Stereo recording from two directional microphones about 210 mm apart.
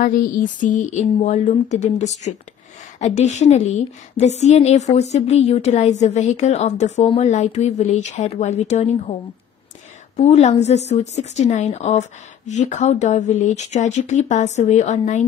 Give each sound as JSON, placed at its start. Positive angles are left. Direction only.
{"t": 0.0, "sound": "a woman's voice", "side_deg": 40}
{"t": 10.1, "sound": "a woman's voice", "side_deg": 35}